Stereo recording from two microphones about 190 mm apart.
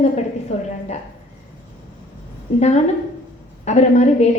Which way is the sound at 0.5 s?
35° left (ahead or behind).